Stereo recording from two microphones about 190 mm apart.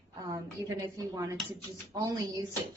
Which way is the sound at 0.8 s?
20° right (ahead or behind).